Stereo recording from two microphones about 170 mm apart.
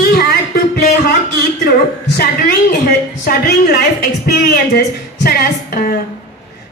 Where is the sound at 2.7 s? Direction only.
65° left (ahead or behind).